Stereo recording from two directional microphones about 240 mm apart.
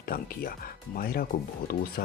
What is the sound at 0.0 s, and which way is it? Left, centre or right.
Speech, left.